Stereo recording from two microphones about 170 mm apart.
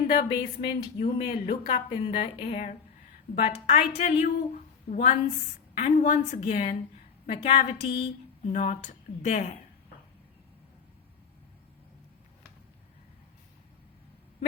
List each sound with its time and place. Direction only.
0.3 s speech: 25° left (ahead or behind)
0.9 s speech: 55° left (ahead or behind)
1.5 s a woman's voice: 35° left (ahead or behind)